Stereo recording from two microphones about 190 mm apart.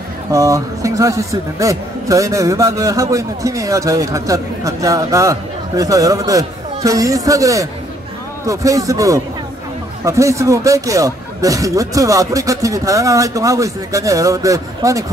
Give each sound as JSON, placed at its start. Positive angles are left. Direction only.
{"t": 0.3, "sound": "a man's voice", "side_deg": -15}